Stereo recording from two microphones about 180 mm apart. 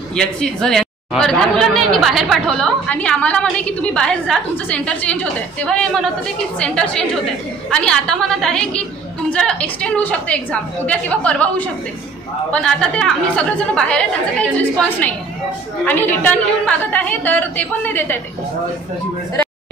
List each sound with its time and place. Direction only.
0.1 s a woman's voice: 5° left (ahead or behind)